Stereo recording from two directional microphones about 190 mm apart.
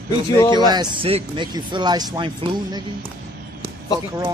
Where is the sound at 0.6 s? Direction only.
20° right (ahead or behind).